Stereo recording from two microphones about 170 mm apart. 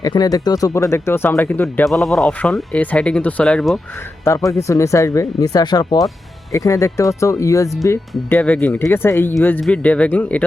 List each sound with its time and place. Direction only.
0.0 s speech: 20° left (ahead or behind); by 3.8 s 5° left (ahead or behind)
4.2 s speech: 20° left (ahead or behind)